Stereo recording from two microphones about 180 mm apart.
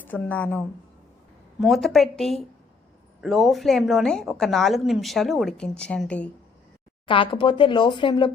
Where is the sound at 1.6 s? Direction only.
Centre (ahead or behind).